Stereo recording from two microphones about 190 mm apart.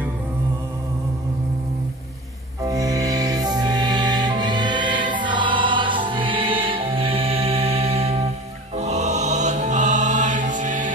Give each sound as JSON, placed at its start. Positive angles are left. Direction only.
{"t": 2.6, "sound": "music", "side_deg": -20}